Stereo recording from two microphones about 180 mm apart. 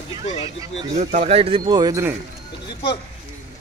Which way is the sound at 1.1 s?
35° right (ahead or behind).